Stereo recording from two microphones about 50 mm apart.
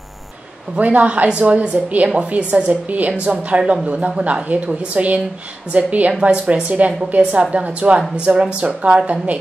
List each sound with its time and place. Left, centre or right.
0.7 s a woman's voice: right
6.7 s a woman's voice: right